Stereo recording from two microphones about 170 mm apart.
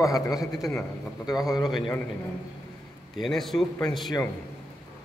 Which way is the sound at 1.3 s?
Centre (ahead or behind).